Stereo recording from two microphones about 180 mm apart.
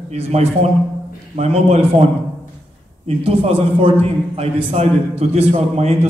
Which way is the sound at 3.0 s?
35° right (ahead or behind).